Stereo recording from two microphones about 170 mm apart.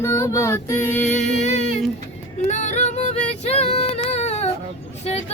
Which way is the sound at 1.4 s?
40° left (ahead or behind).